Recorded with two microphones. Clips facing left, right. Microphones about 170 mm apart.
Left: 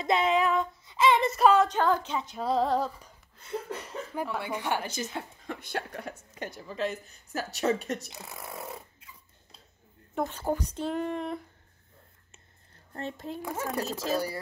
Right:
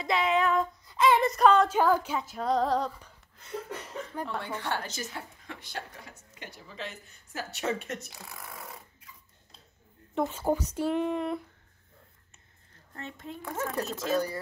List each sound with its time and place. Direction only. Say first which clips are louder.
0.0 s speech: left 2 dB; 20° left (ahead or behind)
0.6 s female singing: even; centre (ahead or behind)
1.7 s speech: right 1 dB; 10° right (ahead or behind)
4.1 s a woman's voice: left 3 dB; 10° left (ahead or behind)
5.5 s a woman's voice: left 7 dB; 55° left (ahead or behind); by 8.1 s 35° left (ahead or behind)
8.1 s speech: left 4 dB; 20° left (ahead or behind)
10.1 s speech: right 2 dB; 5° right (ahead or behind)
12.9 s speech: left 5 dB; 35° left (ahead or behind)
13.4 s a woman's voice: right 2 dB; 15° left (ahead or behind)
13.8 s speech: right 2 dB; 35° left (ahead or behind)